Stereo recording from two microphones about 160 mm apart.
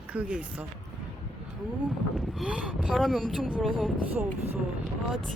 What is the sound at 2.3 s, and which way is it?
Speech, 5° right (ahead or behind).